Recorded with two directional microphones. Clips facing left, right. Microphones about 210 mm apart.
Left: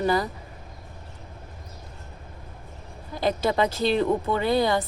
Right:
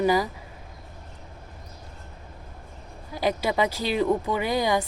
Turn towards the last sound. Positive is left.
turn(degrees=-10)  # may be behind; listen again after turning